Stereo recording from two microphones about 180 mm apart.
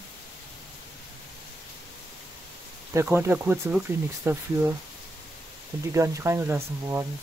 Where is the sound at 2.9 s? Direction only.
15° right (ahead or behind).